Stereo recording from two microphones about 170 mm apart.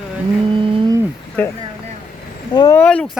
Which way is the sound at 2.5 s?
25° left (ahead or behind).